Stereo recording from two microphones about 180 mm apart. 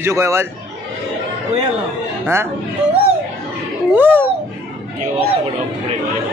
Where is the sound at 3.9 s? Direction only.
10° right (ahead or behind).